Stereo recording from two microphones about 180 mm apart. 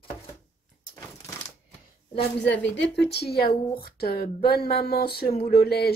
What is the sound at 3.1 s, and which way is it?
Speech, 60° left (ahead or behind).